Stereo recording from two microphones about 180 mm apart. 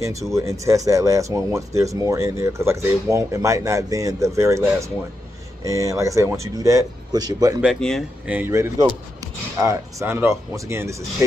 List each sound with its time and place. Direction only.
0.0 s speech: 15° right (ahead or behind)
7.6 s speech: centre (ahead or behind)
8.4 s speech: 15° right (ahead or behind)